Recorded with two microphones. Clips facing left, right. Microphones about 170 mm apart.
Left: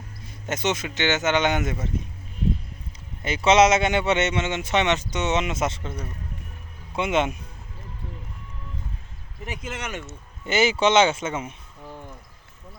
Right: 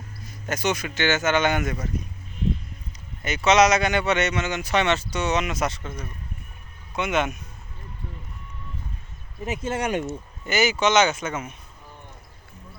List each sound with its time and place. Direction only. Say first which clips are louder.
0.3 s speech: even; 20° left (ahead or behind)
3.2 s speech: left 1 dB; 30° left (ahead or behind)
6.9 s speech: left 1 dB; 25° left (ahead or behind)
9.4 s speech: right 6 dB; 20° right (ahead or behind)
10.1 s speech: even; 25° left (ahead or behind)